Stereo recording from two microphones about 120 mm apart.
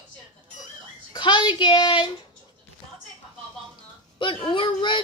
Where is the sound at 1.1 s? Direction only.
40° left (ahead or behind).